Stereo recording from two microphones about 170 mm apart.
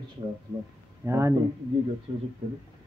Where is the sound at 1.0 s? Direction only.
15° right (ahead or behind).